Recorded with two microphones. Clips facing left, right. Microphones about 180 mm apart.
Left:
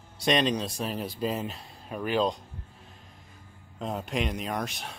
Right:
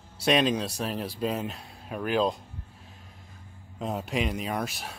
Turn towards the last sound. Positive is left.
turn(degrees=-5)  # may be behind; listen again after turning